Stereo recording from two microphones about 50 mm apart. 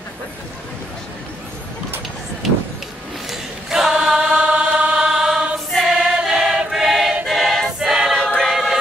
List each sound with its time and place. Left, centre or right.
2.4 s vehicle: centre
3.3 s choir: centre
4.5 s choir: right
4.9 s choir: centre
5.9 s choir: centre
6.7 s a sound: centre
7.2 s choir: centre